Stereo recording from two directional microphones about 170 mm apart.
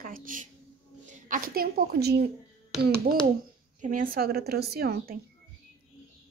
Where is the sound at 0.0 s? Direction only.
55° right (ahead or behind).